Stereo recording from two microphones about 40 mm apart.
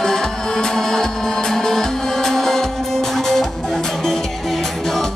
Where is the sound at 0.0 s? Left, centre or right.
Centre.